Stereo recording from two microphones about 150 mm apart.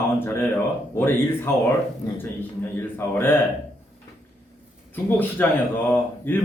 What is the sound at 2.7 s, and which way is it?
Speech, 15° left (ahead or behind).